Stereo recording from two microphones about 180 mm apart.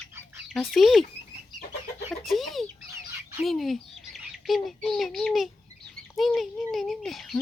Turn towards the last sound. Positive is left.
turn(degrees=0)  # may be behind; listen again after turning